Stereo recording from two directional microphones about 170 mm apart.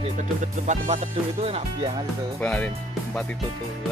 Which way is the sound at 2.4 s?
10° left (ahead or behind).